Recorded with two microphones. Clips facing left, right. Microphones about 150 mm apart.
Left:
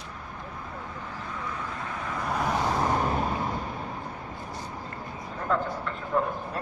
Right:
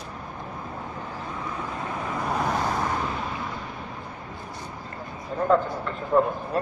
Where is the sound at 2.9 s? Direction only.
40° left (ahead or behind).